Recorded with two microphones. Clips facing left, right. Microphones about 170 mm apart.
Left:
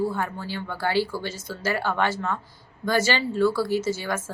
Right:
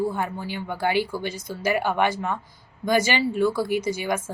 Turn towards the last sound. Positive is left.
turn(degrees=-15)  # may be behind; listen again after turning